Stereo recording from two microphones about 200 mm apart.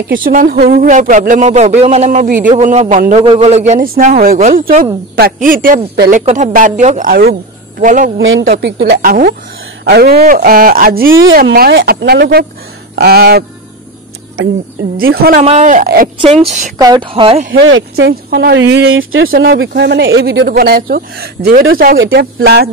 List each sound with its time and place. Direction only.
0.2 s speech: 45° right (ahead or behind)
8.2 s speech: 75° right (ahead or behind)
8.5 s speech: 55° right (ahead or behind)
15.0 s speech: 50° right (ahead or behind)
15.4 s speech: 35° right (ahead or behind)
16.7 s speech: 20° right (ahead or behind)
17.5 s speech: 75° right (ahead or behind)
18.3 s speech: 50° right (ahead or behind)
18.9 s speech: 85° right
19.7 s speech: 55° right (ahead or behind)
21.9 s speech: 70° right (ahead or behind); by 22.7 s 55° right (ahead or behind)